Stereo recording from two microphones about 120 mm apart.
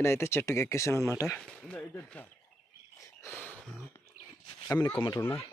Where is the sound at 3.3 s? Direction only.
10° left (ahead or behind).